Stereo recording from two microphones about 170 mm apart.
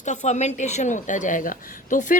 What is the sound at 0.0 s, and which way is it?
Speech, 45° left (ahead or behind).